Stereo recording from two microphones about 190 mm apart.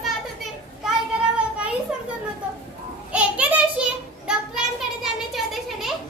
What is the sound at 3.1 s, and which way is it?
Child singing, 5° right (ahead or behind).